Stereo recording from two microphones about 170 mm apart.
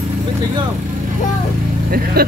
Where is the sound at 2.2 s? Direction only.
60° right (ahead or behind).